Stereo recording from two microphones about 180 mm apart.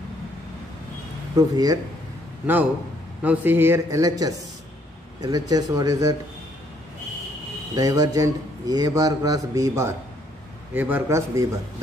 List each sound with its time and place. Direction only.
1.3 s a man's voice: 20° right (ahead or behind)
3.2 s a man's voice: 10° right (ahead or behind)
7.7 s a man's voice: 20° right (ahead or behind)